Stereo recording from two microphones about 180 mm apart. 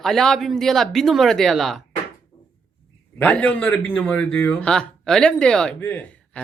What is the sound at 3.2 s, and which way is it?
Speech, 5° left (ahead or behind).